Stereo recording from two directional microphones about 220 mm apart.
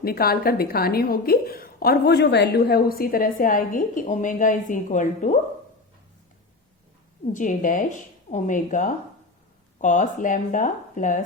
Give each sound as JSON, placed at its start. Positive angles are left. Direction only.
{"t": 0.0, "sound": "a woman's voice", "side_deg": 45}
{"t": 7.3, "sound": "a woman's voice", "side_deg": 35}